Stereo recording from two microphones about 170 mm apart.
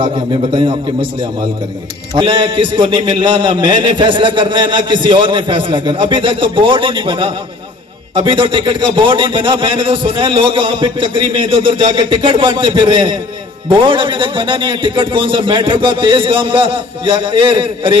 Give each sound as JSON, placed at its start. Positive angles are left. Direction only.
{"t": 0.0, "sound": "a man's voice", "side_deg": -30}
{"t": 2.1, "sound": "a man's voice", "side_deg": -30}